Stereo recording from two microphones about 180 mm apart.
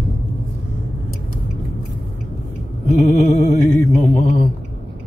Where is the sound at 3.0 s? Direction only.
40° left (ahead or behind).